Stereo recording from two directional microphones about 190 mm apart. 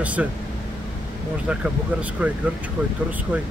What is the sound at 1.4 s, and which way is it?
Speech, 5° right (ahead or behind).